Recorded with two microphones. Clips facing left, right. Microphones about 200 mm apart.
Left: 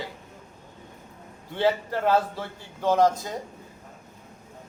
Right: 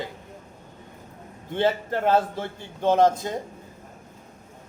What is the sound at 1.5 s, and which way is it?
A man's voice, 20° right (ahead or behind).